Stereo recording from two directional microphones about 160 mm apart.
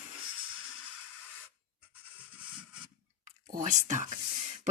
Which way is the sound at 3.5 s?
50° right (ahead or behind).